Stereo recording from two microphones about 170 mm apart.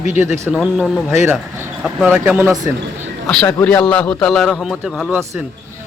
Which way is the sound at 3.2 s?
5° left (ahead or behind).